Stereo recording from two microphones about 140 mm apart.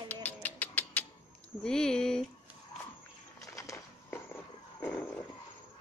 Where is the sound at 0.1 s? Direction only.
10° left (ahead or behind).